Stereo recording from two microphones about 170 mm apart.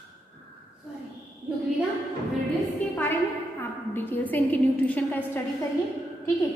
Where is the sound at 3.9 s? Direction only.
10° left (ahead or behind).